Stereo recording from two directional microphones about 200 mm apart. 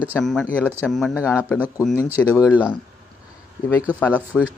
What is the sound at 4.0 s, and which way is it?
Speech, 5° left (ahead or behind).